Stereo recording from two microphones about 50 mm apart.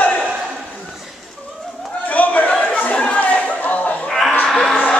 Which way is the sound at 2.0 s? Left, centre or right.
Left.